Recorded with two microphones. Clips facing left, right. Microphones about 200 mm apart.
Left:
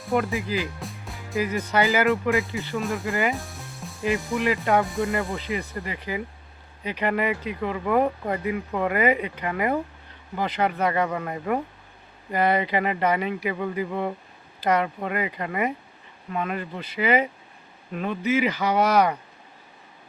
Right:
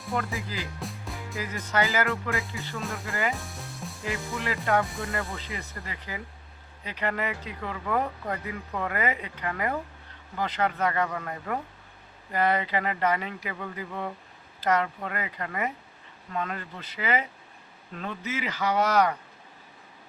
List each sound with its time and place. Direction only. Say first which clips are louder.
0.1 s speech: left 7 dB; 15° left (ahead or behind)
0.8 s music: even; centre (ahead or behind)
1.4 s speech: left 6 dB; 15° left (ahead or behind)
3.3 s music: left 3 dB; centre (ahead or behind)
4.0 s speech: left 9 dB; 15° left (ahead or behind)